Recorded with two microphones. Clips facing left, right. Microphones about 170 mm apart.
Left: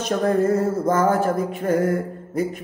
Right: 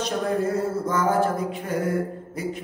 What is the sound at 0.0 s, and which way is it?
Speech, 50° left (ahead or behind).